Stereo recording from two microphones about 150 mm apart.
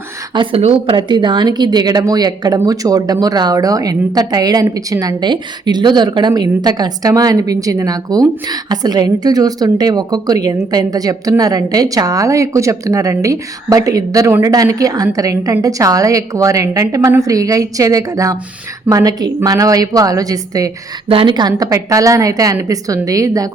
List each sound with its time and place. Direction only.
0.3 s a woman's voice: 40° right (ahead or behind); by 20.7 s 25° right (ahead or behind)
21.1 s a woman's voice: 35° right (ahead or behind)